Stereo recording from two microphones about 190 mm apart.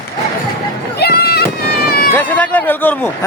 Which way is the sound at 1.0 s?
55° left (ahead or behind).